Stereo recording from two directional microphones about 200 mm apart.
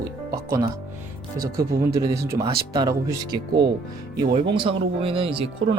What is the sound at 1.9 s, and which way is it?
Speech, 15° right (ahead or behind).